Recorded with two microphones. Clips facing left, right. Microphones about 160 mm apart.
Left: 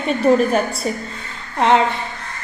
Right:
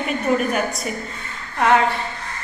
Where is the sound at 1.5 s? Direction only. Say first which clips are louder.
Left 2 dB; 25° left (ahead or behind).